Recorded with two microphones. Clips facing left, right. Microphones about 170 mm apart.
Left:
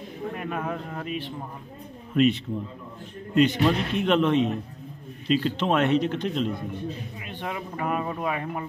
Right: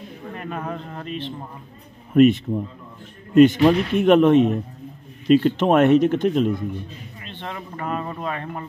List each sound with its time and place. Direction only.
0.3 s a man's voice: 5° left (ahead or behind)
2.1 s speech: 45° right (ahead or behind)
7.2 s speech: 10° left (ahead or behind)